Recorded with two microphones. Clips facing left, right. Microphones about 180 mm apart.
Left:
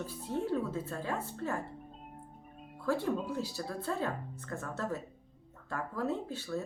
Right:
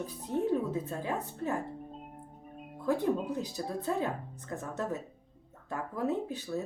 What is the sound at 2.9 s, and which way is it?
Speech, 20° right (ahead or behind).